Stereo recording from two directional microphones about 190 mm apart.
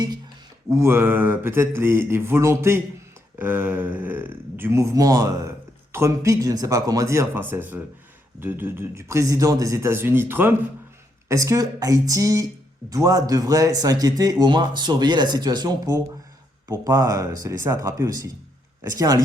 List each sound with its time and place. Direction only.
0.7 s a man's voice: 15° right (ahead or behind)